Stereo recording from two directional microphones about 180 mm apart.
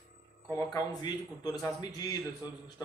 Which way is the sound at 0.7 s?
20° left (ahead or behind).